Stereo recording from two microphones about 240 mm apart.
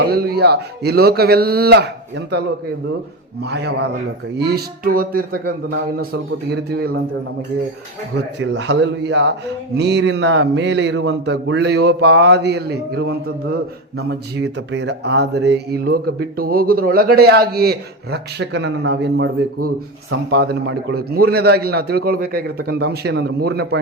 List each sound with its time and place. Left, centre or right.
0.0 s a man's voice: right
3.4 s a man's voice: right
6.5 s a man's voice: right
8.4 s speech: right
20.3 s a man's voice: right